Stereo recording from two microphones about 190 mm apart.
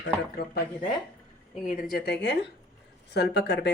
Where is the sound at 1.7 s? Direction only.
50° left (ahead or behind).